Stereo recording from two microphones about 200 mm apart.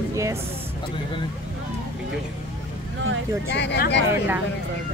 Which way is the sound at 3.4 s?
60° left (ahead or behind).